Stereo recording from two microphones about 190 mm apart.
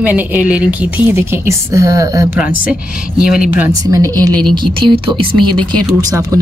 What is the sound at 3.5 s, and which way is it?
Speech, 15° right (ahead or behind).